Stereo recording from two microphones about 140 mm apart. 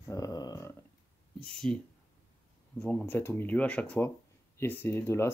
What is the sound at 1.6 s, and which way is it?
Speech, 5° left (ahead or behind).